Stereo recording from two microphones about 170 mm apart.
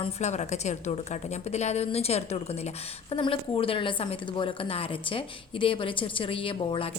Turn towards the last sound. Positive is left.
turn(degrees=30)  # may be behind; listen again after turning